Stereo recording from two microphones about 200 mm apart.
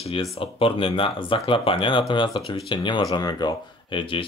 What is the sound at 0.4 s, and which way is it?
Speech, 25° left (ahead or behind).